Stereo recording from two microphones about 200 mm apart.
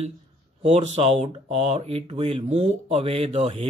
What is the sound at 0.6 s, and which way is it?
Speech, 30° right (ahead or behind).